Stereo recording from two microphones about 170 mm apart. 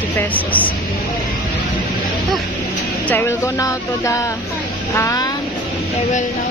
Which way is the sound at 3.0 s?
15° left (ahead or behind).